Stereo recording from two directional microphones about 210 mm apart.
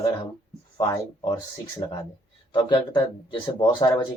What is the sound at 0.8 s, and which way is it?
Speech, 20° left (ahead or behind).